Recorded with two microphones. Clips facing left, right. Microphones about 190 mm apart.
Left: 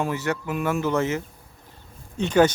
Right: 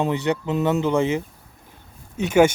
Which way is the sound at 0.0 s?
20° right (ahead or behind).